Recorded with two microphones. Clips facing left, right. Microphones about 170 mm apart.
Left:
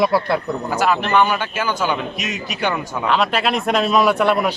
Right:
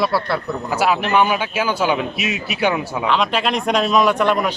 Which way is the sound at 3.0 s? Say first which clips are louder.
Left 1 dB; 5° left (ahead or behind).